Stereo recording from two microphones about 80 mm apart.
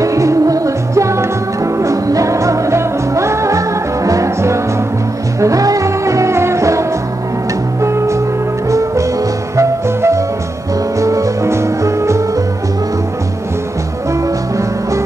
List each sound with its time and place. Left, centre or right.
0.0 s music: right
14.6 s music: right